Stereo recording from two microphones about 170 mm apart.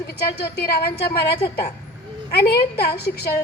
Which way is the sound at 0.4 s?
70° left (ahead or behind).